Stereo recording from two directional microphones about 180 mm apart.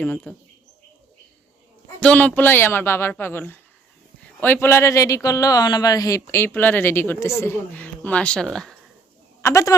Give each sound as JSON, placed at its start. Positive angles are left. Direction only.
{"t": 0.0, "sound": "speech", "side_deg": 5}
{"t": 2.0, "sound": "speech", "side_deg": 5}
{"t": 9.4, "sound": "speech", "side_deg": 15}